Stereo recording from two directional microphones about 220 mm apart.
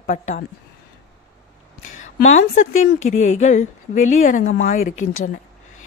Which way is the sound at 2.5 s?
35° left (ahead or behind).